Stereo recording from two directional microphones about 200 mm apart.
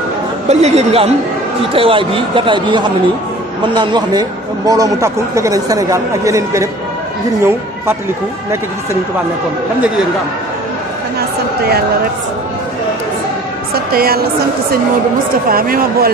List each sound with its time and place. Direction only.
0.5 s a man's voice: 35° right (ahead or behind); by 6.7 s 15° right (ahead or behind)
11.1 s a sound: 50° right (ahead or behind)
13.9 s speech: 50° right (ahead or behind)
15.5 s speech: 45° right (ahead or behind)